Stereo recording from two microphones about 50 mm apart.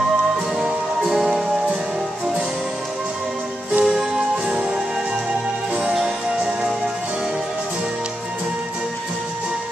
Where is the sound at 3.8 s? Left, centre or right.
Centre.